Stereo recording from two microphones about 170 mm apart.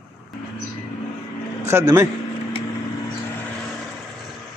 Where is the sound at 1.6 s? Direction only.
15° right (ahead or behind).